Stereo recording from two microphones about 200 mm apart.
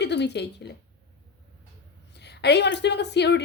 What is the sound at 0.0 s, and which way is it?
Speech, 60° left (ahead or behind).